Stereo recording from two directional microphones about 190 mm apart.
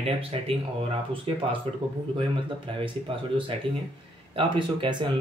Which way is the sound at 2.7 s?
25° right (ahead or behind).